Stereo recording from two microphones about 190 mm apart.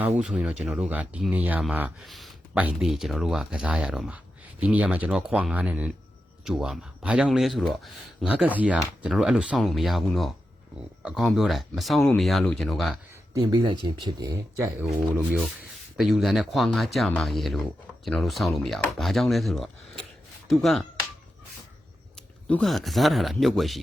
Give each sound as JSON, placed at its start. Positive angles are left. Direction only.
{"t": 0.2, "sound": "speech", "side_deg": -5}
{"t": 13.3, "sound": "speech", "side_deg": -20}
{"t": 16.0, "sound": "speech", "side_deg": 0}
{"t": 22.1, "sound": "speech", "side_deg": 5}